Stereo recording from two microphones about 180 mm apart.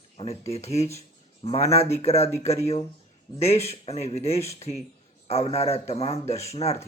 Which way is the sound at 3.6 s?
35° left (ahead or behind).